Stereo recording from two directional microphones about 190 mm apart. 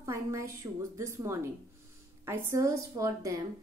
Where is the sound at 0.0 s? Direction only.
15° right (ahead or behind).